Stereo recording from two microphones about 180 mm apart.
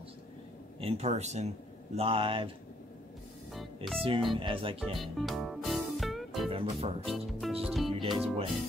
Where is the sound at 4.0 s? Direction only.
30° right (ahead or behind).